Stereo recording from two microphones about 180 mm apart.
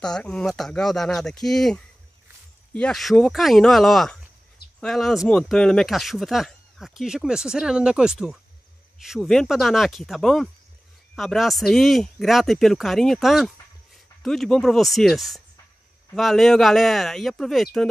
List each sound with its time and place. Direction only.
0.0 s speech: 5° left (ahead or behind)